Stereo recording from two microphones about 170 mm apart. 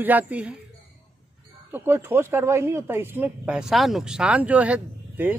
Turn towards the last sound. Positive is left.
turn(degrees=-10)  # may be behind; listen again after turning